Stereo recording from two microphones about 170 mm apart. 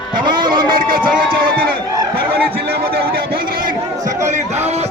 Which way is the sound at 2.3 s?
65° right (ahead or behind).